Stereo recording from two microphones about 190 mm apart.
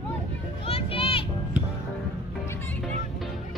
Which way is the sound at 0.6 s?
30° left (ahead or behind).